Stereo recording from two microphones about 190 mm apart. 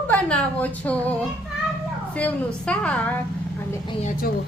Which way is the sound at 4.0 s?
40° left (ahead or behind).